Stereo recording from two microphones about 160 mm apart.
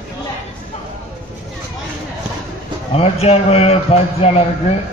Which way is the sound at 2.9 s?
40° left (ahead or behind).